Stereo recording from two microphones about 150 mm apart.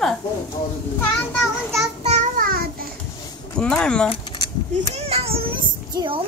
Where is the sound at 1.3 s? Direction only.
Centre (ahead or behind).